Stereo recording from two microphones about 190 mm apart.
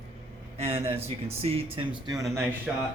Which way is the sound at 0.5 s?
35° right (ahead or behind).